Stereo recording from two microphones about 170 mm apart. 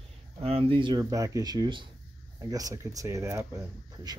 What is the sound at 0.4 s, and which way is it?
Speech, 35° right (ahead or behind).